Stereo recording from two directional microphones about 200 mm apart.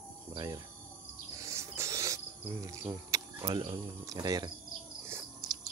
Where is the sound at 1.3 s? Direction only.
15° right (ahead or behind).